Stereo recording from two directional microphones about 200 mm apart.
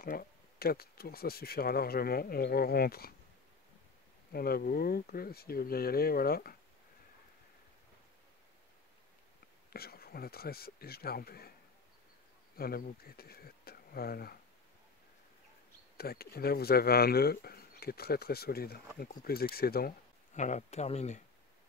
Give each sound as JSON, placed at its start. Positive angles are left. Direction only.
{"t": 0.0, "sound": "speech", "side_deg": 45}
{"t": 4.3, "sound": "speech", "side_deg": 50}
{"t": 9.7, "sound": "speech", "side_deg": 50}
{"t": 12.5, "sound": "speech", "side_deg": 50}
{"t": 16.0, "sound": "speech", "side_deg": 50}
{"t": 20.3, "sound": "speech", "side_deg": 35}